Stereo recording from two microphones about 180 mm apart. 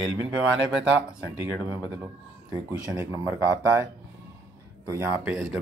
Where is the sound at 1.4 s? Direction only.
10° right (ahead or behind).